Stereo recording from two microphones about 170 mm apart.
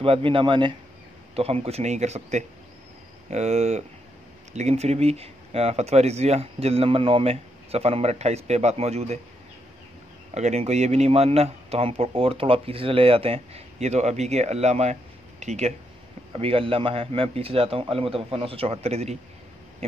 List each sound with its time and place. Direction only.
0.0 s a man's voice: 35° right (ahead or behind)
10.3 s a man's voice: 40° right (ahead or behind)